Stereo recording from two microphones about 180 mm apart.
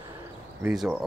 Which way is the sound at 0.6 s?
Centre (ahead or behind).